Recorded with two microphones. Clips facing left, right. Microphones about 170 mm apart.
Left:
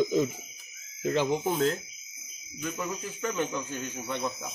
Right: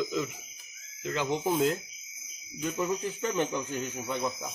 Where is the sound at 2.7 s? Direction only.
20° right (ahead or behind).